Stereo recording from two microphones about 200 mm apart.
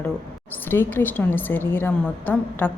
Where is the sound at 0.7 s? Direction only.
10° left (ahead or behind).